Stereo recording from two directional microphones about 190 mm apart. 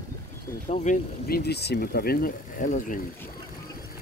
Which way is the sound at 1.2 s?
55° left (ahead or behind).